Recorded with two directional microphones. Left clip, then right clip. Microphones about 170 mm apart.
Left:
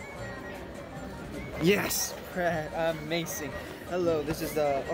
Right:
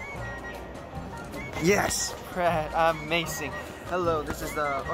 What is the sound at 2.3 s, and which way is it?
Speech, 10° left (ahead or behind).